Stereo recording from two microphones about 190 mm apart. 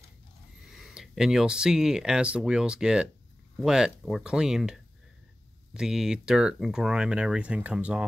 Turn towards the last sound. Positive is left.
turn(degrees=-5)  # may be behind; listen again after turning